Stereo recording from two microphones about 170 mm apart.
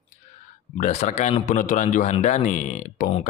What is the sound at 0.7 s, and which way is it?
Speech, 45° left (ahead or behind).